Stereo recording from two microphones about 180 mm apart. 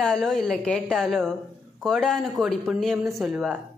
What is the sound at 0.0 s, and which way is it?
A woman's voice, 5° left (ahead or behind).